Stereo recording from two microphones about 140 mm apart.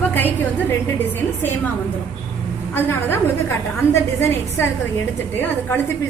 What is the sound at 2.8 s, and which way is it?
A woman's voice, 15° left (ahead or behind).